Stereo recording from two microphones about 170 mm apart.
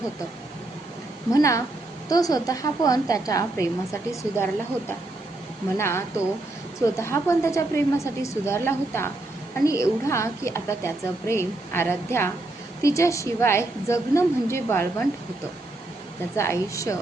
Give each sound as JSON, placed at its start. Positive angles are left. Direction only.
{"t": 1.3, "sound": "a woman's voice", "side_deg": 20}
{"t": 5.7, "sound": "a woman's voice", "side_deg": 15}
{"t": 16.3, "sound": "a woman's voice", "side_deg": 15}